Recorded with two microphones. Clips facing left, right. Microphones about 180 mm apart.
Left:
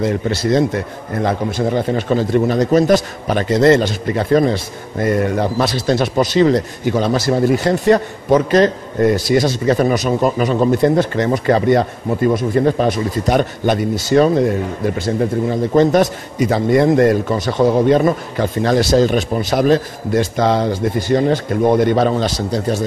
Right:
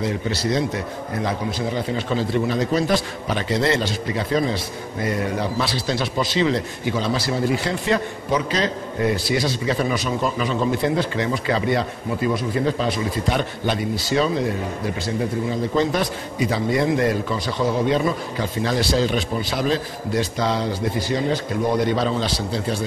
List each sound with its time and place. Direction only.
0.0 s a man's voice: 50° left (ahead or behind)
15.7 s a man's voice: 50° left (ahead or behind)